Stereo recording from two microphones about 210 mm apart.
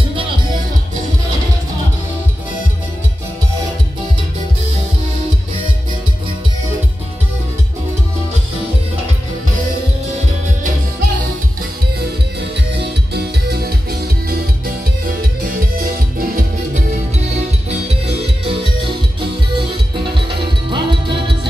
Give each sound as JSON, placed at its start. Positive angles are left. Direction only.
{"t": 12.4, "sound": "music", "side_deg": -50}
{"t": 15.8, "sound": "music", "side_deg": -45}
{"t": 17.6, "sound": "music", "side_deg": -30}
{"t": 20.7, "sound": "music", "side_deg": -25}